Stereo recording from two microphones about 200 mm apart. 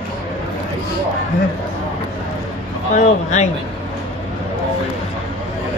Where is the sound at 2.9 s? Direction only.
35° left (ahead or behind).